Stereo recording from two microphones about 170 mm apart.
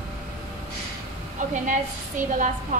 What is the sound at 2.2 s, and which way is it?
Speech, 50° right (ahead or behind).